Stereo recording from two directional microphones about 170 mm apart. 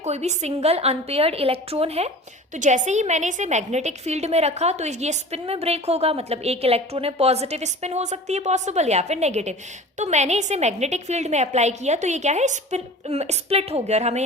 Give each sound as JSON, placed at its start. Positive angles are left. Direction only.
{"t": 0.0, "sound": "a woman's voice", "side_deg": -40}